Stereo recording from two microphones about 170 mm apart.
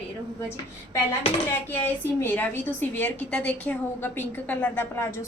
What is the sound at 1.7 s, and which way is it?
A woman's voice, 10° left (ahead or behind).